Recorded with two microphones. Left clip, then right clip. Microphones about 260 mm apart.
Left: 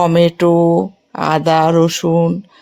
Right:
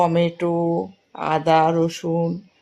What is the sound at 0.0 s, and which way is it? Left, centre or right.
Speech, left.